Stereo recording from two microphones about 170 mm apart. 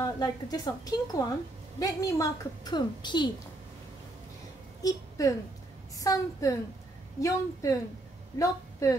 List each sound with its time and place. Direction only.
0.0 s a woman's voice: 25° left (ahead or behind)
4.8 s a woman's voice: 20° left (ahead or behind)